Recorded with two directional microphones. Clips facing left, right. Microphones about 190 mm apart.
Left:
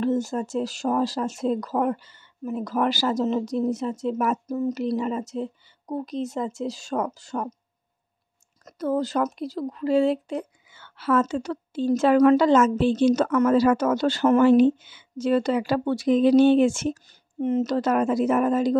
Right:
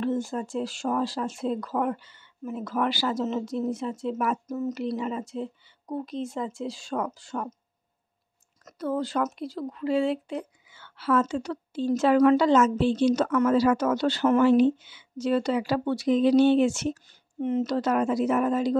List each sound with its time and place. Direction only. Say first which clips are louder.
0.0 s speech: left 4 dB; 40° left (ahead or behind)
8.6 s speech: left 4 dB; 40° left (ahead or behind)